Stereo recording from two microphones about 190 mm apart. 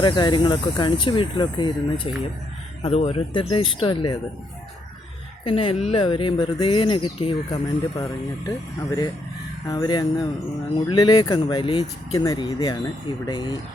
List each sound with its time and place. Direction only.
0.0 s speech: 25° left (ahead or behind)
2.8 s speech: 35° left (ahead or behind)
5.5 s speech: 30° left (ahead or behind)
9.6 s speech: 25° left (ahead or behind)